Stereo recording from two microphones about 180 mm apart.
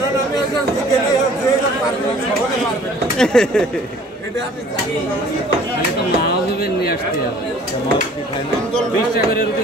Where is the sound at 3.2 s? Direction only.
5° left (ahead or behind).